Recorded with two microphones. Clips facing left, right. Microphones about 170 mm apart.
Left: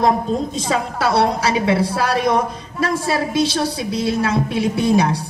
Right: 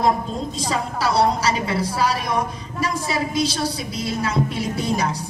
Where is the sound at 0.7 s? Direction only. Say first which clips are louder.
Left 3 dB; 60° left (ahead or behind).